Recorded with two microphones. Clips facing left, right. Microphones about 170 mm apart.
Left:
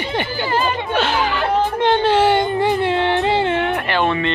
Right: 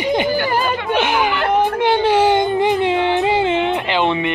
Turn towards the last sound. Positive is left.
turn(degrees=-15)  # may be behind; listen again after turning